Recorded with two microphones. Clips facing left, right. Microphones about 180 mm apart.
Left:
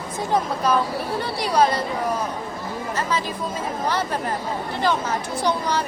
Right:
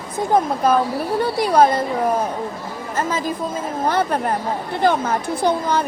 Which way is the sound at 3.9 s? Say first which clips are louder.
Right 6 dB; 55° right (ahead or behind).